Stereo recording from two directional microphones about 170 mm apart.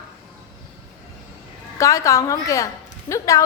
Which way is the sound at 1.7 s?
20° left (ahead or behind).